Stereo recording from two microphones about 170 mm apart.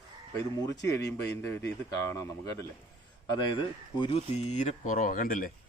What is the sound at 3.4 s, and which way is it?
Speech, 30° left (ahead or behind).